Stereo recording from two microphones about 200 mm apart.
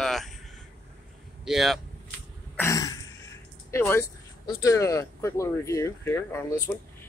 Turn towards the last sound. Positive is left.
turn(degrees=15)  # may be behind; listen again after turning